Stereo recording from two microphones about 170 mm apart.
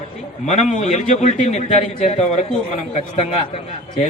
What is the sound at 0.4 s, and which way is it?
A man's voice, 45° left (ahead or behind).